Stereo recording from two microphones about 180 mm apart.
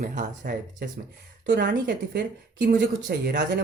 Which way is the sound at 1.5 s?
65° right (ahead or behind).